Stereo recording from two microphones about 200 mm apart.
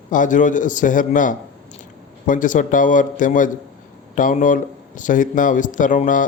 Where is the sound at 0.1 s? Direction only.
40° left (ahead or behind).